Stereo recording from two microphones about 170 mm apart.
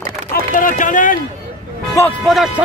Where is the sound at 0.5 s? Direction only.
50° left (ahead or behind).